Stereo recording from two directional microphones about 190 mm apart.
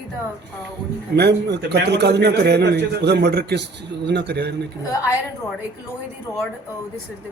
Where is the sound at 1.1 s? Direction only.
60° right (ahead or behind).